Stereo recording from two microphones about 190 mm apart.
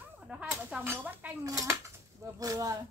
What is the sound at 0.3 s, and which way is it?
Speech, 5° right (ahead or behind).